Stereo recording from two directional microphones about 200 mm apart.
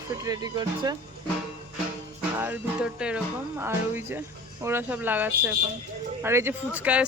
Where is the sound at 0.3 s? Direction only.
20° right (ahead or behind).